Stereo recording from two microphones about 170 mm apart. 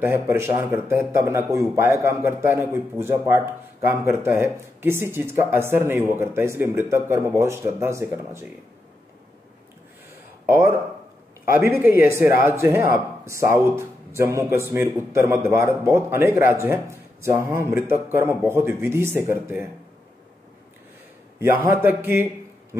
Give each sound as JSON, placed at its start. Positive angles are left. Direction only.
{"t": 0.0, "sound": "speech", "side_deg": -15}
{"t": 10.4, "sound": "speech", "side_deg": -15}
{"t": 21.4, "sound": "speech", "side_deg": -15}